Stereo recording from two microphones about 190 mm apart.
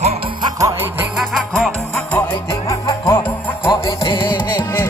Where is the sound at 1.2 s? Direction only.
Centre (ahead or behind).